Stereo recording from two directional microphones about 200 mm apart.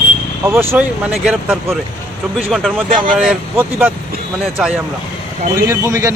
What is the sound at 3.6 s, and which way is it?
Speech, 10° right (ahead or behind).